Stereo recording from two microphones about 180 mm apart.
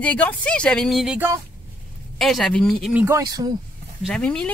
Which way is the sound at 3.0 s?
20° right (ahead or behind).